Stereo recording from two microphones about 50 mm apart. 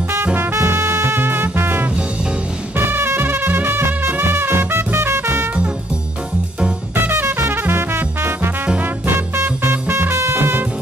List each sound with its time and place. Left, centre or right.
0.2 s music: right
0.5 s music: right
7.0 s music: right
7.2 s music: right
7.6 s music: right